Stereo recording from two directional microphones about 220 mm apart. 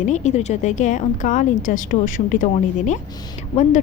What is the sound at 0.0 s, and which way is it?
Speech, 30° left (ahead or behind).